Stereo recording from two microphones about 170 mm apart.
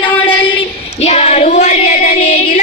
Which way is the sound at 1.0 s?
40° left (ahead or behind).